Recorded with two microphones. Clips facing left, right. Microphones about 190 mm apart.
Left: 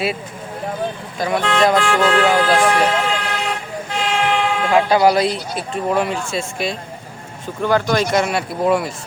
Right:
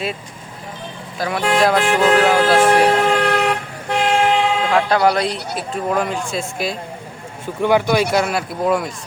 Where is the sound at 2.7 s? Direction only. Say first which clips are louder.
Right 4 dB; 45° right (ahead or behind); by 4.1 s 60° right (ahead or behind).